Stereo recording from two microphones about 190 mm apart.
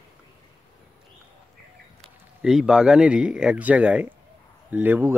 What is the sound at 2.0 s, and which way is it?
A man's voice, 5° right (ahead or behind).